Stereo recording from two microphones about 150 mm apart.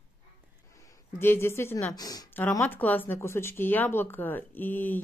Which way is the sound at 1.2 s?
15° left (ahead or behind).